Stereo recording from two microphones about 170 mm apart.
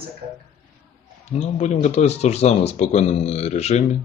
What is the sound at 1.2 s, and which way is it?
Speech, 40° left (ahead or behind).